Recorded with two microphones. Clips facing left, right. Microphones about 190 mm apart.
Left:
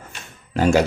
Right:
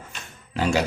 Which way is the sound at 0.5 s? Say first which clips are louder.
Left 6 dB; 45° left (ahead or behind).